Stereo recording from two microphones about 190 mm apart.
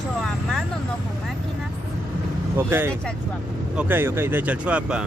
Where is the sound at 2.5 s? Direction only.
15° right (ahead or behind).